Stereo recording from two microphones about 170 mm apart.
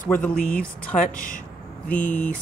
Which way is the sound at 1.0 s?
50° left (ahead or behind).